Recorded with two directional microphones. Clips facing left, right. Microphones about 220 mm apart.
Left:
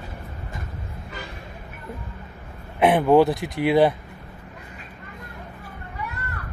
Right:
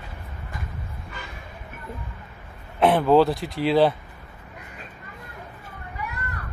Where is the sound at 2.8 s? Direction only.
15° left (ahead or behind).